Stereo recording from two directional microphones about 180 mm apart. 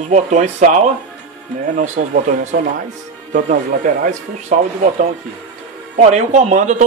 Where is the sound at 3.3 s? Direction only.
45° right (ahead or behind).